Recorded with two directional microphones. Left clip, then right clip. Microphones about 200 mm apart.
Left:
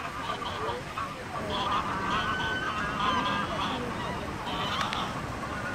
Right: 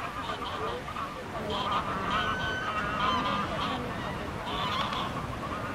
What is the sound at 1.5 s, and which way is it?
Vehicle, 30° right (ahead or behind).